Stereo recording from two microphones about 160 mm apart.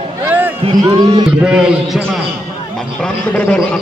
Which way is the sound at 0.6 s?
35° right (ahead or behind).